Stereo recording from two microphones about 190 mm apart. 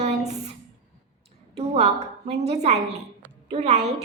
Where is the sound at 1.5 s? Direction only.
35° right (ahead or behind).